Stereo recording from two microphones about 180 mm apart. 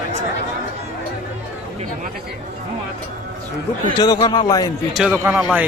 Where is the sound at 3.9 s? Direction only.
20° left (ahead or behind).